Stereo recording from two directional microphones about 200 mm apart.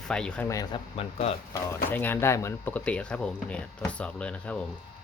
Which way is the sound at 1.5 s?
15° left (ahead or behind).